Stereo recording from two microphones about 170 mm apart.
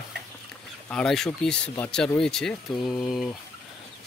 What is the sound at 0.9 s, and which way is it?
Speech, 5° left (ahead or behind).